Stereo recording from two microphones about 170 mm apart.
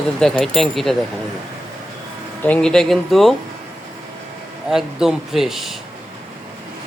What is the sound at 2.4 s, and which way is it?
Speech, 5° left (ahead or behind).